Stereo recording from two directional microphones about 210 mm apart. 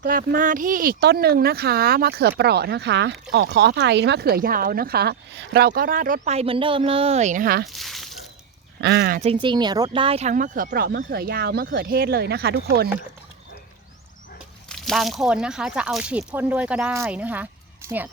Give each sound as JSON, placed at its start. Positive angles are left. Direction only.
{"t": 0.0, "sound": "speech", "side_deg": -45}
{"t": 7.7, "sound": "a sound", "side_deg": 0}
{"t": 8.8, "sound": "speech", "side_deg": -50}
{"t": 9.2, "sound": "speech", "side_deg": -25}
{"t": 14.7, "sound": "speech", "side_deg": 0}